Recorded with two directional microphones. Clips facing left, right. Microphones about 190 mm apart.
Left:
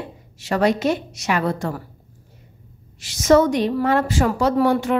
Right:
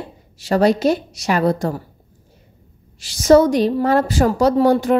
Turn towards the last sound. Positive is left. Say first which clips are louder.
# right 4 dB
turn(degrees=-40)  # may be behind; listen again after turning